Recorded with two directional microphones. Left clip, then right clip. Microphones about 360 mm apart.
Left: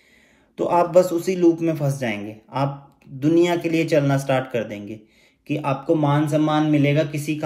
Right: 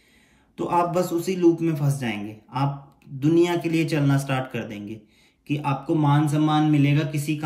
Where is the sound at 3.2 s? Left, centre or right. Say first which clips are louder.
Left 2 dB; centre.